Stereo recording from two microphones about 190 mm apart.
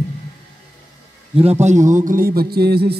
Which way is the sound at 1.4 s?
35° right (ahead or behind).